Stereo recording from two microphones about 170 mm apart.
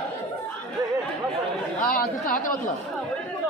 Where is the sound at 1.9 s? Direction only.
55° left (ahead or behind).